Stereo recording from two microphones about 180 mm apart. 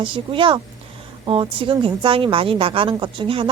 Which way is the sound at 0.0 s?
30° right (ahead or behind).